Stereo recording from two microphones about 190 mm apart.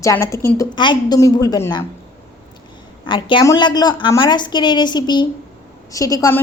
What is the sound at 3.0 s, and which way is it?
A woman's voice, 25° left (ahead or behind).